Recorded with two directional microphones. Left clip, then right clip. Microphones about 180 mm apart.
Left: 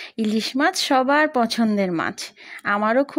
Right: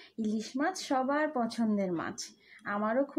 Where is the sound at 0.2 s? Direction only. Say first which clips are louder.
Left 12 dB; 25° left (ahead or behind).